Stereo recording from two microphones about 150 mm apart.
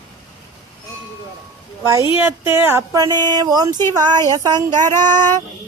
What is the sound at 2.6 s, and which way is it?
Speech, 15° right (ahead or behind).